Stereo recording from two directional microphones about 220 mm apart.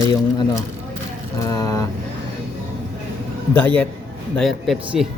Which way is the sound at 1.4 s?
15° left (ahead or behind).